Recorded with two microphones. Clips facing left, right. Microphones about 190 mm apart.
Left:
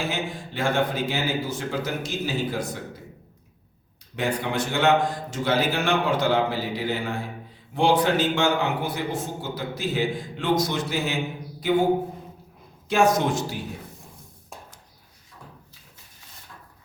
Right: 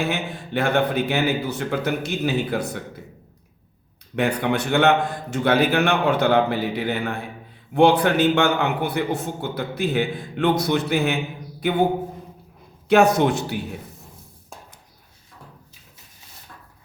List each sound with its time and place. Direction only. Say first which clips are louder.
0.0 s a man's voice: right 3 dB; 60° right (ahead or behind)
4.1 s a man's voice: right 5 dB; 60° right (ahead or behind)
12.9 s a man's voice: right 4 dB; 65° right (ahead or behind)